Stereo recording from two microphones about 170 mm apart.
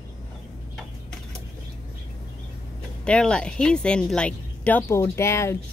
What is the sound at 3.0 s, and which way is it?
A woman's voice, 5° left (ahead or behind).